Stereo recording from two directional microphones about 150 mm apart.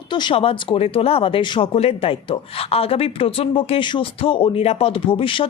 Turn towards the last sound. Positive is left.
turn(degrees=35)  # may be behind; listen again after turning